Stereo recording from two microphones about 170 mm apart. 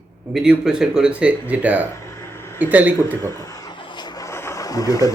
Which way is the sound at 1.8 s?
15° left (ahead or behind).